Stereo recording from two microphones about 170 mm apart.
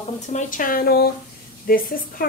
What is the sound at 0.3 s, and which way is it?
A woman's voice, 50° left (ahead or behind).